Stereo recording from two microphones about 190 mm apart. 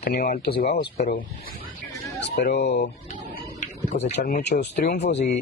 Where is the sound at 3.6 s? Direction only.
40° left (ahead or behind).